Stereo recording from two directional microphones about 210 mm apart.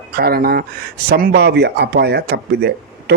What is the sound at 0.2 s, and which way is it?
Speech, 45° right (ahead or behind).